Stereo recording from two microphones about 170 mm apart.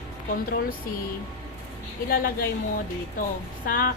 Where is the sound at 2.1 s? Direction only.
65° left (ahead or behind).